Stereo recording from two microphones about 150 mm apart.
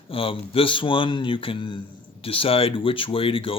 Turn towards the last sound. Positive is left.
turn(degrees=35)  # may be behind; listen again after turning